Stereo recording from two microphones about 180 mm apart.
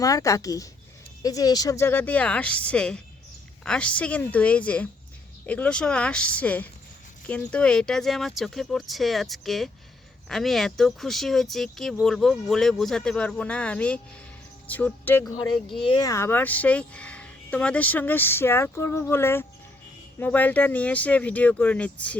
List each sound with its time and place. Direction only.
0.0 s speech: 20° left (ahead or behind)
15.8 s speech: 25° left (ahead or behind); by 22.2 s 5° left (ahead or behind)